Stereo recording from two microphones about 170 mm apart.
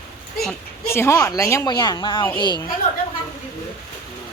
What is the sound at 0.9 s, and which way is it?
Speech, 15° left (ahead or behind).